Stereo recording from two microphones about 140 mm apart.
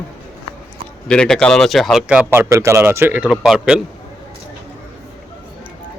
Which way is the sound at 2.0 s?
15° right (ahead or behind).